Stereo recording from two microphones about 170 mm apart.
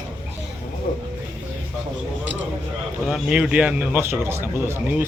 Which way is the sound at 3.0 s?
5° right (ahead or behind).